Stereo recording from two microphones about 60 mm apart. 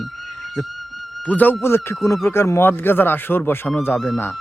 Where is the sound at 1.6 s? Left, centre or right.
Left.